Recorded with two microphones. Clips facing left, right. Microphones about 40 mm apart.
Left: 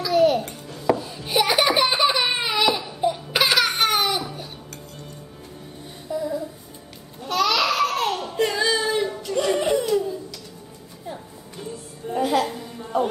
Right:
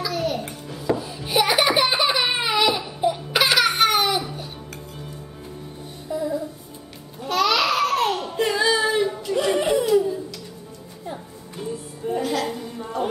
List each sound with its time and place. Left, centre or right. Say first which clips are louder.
0.1 s music: left 12 dB; centre
0.4 s music: even; centre
0.9 s a sound: right 1 dB; centre
6.0 s music: right 1 dB; centre
7.2 s babbling: right 1 dB; centre
11.1 s music: right 1 dB; centre
12.2 s music: left 5 dB; centre
12.4 s a sound: right 3 dB; centre